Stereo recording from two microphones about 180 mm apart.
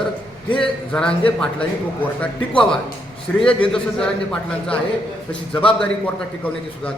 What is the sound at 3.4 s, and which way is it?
A man's voice, 5° left (ahead or behind).